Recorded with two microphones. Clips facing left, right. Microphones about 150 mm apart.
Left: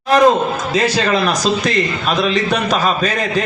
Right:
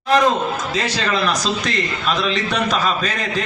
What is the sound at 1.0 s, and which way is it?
A man's voice, 45° left (ahead or behind).